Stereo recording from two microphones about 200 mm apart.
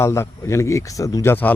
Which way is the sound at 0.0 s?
15° left (ahead or behind).